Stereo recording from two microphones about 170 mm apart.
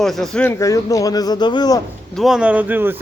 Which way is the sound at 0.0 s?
Centre (ahead or behind).